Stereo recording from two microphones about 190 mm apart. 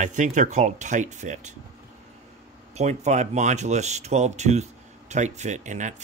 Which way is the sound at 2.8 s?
35° right (ahead or behind).